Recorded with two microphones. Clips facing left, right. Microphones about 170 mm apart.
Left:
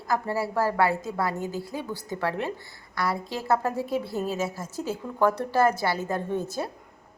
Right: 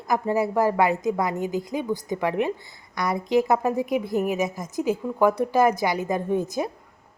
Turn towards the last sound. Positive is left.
turn(degrees=-15)  # may be behind; listen again after turning